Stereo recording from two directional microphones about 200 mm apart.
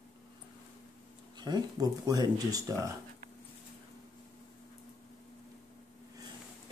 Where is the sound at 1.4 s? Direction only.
20° right (ahead or behind).